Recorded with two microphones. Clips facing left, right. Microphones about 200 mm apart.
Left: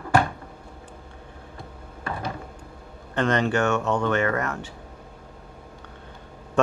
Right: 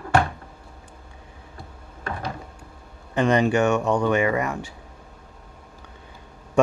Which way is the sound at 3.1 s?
10° right (ahead or behind).